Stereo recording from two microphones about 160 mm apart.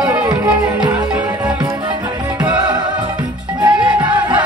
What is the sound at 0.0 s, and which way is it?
Music, 25° right (ahead or behind).